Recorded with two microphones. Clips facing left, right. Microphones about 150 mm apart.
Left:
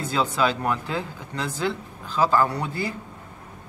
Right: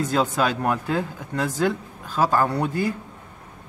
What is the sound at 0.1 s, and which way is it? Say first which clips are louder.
Speech: left 3 dB; 50° right (ahead or behind).